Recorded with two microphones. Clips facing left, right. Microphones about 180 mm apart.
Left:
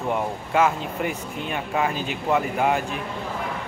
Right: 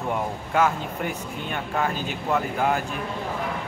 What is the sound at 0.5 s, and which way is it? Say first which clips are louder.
Speech: left 1 dB; 5° left (ahead or behind).